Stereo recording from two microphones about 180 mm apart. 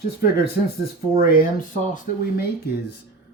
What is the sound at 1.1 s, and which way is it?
Speech, 55° left (ahead or behind).